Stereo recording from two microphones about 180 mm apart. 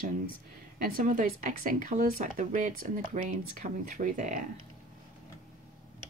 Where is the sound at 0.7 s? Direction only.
50° right (ahead or behind).